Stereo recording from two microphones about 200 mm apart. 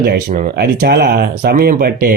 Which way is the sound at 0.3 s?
45° right (ahead or behind).